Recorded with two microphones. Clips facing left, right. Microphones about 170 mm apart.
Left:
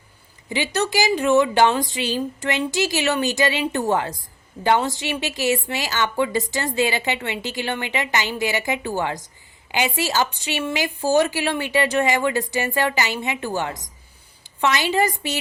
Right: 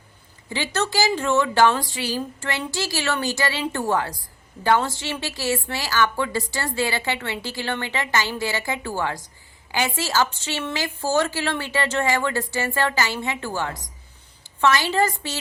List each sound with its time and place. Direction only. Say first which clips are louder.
0.5 s a woman's voice: left 2 dB; 15° left (ahead or behind)